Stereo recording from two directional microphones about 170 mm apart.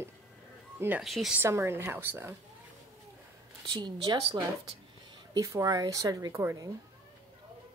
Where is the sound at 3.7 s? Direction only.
25° right (ahead or behind).